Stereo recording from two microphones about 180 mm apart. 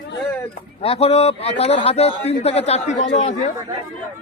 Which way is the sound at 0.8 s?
35° left (ahead or behind).